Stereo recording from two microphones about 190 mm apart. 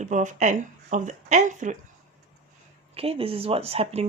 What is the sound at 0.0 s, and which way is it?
Speech, 40° right (ahead or behind).